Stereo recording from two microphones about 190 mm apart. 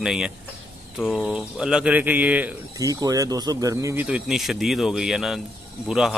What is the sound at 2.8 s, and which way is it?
Speech, 20° right (ahead or behind).